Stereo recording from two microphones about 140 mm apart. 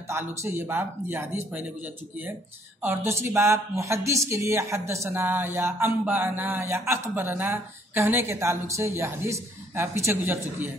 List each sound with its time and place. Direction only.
0.1 s speech: 20° right (ahead or behind)
2.8 s speech: 15° right (ahead or behind)